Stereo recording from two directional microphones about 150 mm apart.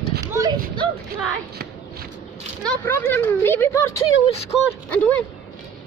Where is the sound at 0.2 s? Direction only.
20° right (ahead or behind).